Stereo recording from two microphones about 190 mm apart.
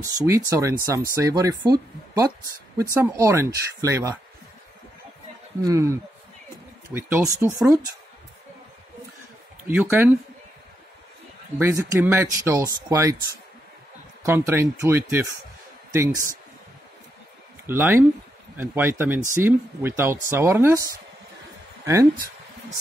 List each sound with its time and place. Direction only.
0.0 s speech: 15° right (ahead or behind)
5.6 s speech: 15° right (ahead or behind)
9.7 s speech: 10° right (ahead or behind)
11.6 s speech: 15° right (ahead or behind)
14.2 s speech: 15° right (ahead or behind)
17.6 s speech: 10° right (ahead or behind)